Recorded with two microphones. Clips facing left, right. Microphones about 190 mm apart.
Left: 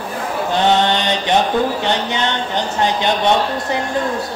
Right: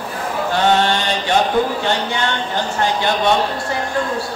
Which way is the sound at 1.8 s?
20° left (ahead or behind).